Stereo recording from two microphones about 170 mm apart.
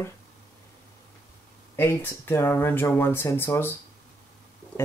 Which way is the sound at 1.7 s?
15° left (ahead or behind).